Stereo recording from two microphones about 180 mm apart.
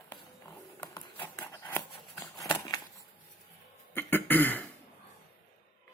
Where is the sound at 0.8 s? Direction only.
15° left (ahead or behind).